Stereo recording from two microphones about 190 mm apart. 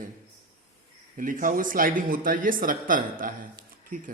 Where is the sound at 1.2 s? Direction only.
45° right (ahead or behind).